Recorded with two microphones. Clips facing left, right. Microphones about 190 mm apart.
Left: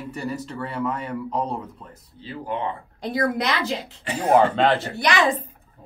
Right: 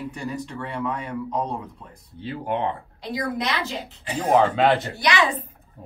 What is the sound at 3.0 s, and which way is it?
Speech, 60° left (ahead or behind).